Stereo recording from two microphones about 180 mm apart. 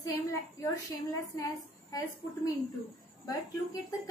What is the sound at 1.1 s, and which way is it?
A woman's voice, 20° left (ahead or behind).